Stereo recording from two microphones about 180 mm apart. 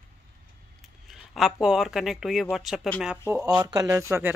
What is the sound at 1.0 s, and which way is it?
Speech, centre (ahead or behind).